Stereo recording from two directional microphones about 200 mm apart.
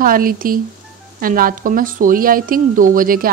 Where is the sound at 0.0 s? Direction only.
45° right (ahead or behind).